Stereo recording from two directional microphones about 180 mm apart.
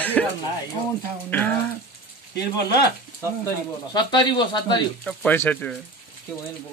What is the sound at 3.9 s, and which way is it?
Speech, 25° left (ahead or behind).